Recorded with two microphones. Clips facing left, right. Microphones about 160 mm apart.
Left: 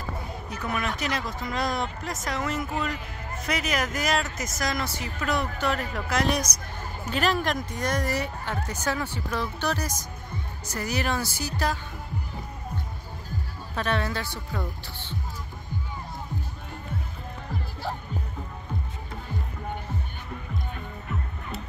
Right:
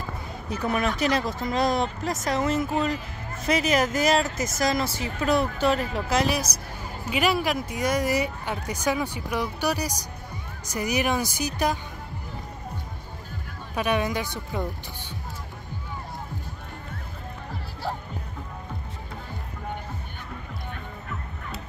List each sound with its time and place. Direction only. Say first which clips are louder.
0.5 s speech: right 5 dB; 30° right (ahead or behind)
7.1 s speech: right 2 dB; 10° right (ahead or behind)
13.7 s speech: right 3 dB; 15° right (ahead or behind)